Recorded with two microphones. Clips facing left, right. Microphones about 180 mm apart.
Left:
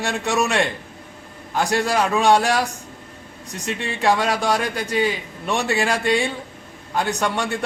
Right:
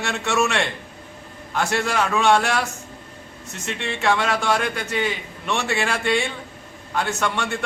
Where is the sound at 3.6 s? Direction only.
35° left (ahead or behind).